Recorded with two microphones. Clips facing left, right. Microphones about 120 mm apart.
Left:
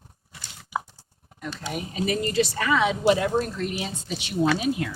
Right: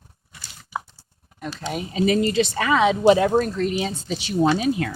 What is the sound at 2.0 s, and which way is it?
Speech, 90° right.